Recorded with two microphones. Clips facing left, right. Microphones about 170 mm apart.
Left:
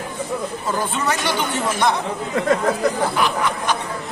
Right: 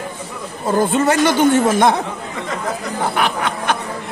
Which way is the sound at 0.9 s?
50° right (ahead or behind).